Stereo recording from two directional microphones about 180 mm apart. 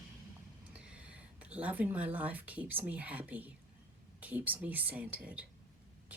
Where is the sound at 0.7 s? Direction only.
5° right (ahead or behind).